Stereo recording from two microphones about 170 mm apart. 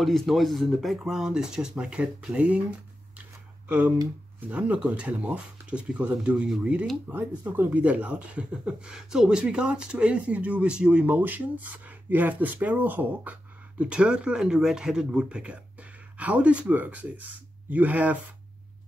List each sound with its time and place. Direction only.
0.0 s speech: centre (ahead or behind)
3.6 s speech: 10° right (ahead or behind)